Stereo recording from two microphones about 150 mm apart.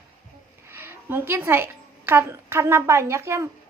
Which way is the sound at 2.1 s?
15° right (ahead or behind).